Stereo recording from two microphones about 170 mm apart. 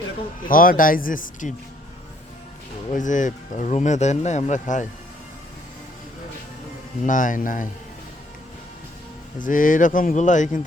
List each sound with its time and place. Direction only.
0.4 s speech: 55° left (ahead or behind)
2.9 s speech: 50° left (ahead or behind)
7.0 s speech: 50° left (ahead or behind)
9.4 s speech: 50° left (ahead or behind)